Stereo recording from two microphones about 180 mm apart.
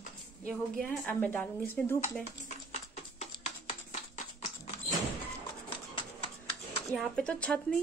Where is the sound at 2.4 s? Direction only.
40° left (ahead or behind).